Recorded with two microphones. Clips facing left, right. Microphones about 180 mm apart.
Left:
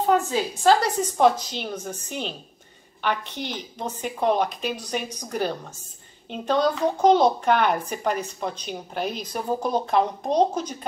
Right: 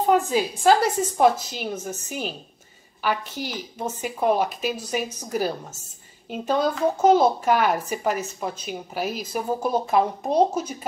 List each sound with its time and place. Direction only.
0.1 s a woman's voice: 10° right (ahead or behind)